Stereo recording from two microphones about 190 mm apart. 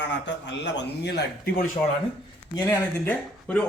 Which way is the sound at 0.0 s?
70° left (ahead or behind).